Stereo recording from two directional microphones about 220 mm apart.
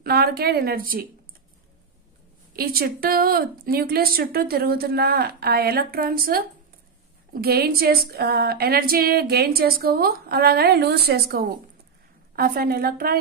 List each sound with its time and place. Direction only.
0.0 s speech: 45° right (ahead or behind)
2.5 s speech: 45° right (ahead or behind)